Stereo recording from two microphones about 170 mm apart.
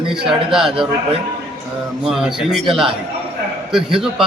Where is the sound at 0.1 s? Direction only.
5° right (ahead or behind).